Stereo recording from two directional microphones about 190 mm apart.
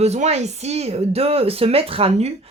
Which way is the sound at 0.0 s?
35° right (ahead or behind).